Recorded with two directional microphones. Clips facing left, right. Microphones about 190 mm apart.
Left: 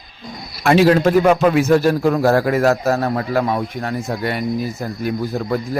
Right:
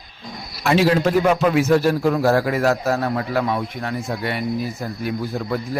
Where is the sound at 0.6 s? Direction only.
55° left (ahead or behind).